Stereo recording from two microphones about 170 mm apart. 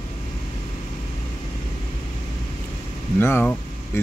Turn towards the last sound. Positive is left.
turn(degrees=10)  # may be behind; listen again after turning